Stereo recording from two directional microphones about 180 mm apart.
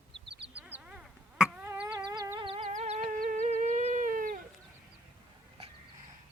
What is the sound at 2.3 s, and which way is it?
Music, 30° right (ahead or behind).